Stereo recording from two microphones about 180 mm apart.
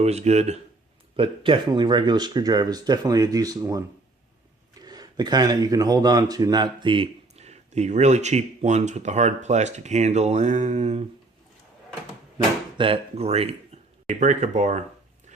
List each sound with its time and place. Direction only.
0.0 s speech: 35° right (ahead or behind)
12.7 s speech: 30° right (ahead or behind)